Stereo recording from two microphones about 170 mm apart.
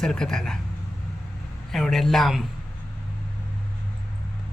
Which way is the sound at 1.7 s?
Centre (ahead or behind).